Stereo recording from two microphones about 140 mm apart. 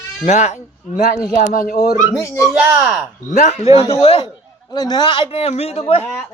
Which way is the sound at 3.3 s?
55° left (ahead or behind).